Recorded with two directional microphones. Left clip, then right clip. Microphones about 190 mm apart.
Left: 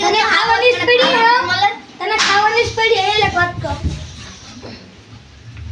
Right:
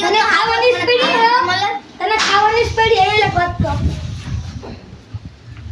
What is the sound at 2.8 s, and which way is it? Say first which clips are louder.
Speech: right 2 dB; 15° right (ahead or behind).